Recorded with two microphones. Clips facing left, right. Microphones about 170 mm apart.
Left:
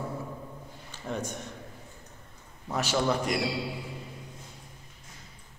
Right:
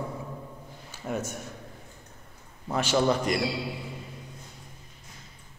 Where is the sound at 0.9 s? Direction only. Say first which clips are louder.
Right 2 dB; 5° right (ahead or behind).